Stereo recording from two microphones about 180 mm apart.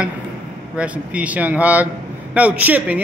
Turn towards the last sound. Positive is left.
turn(degrees=-10)  # may be behind; listen again after turning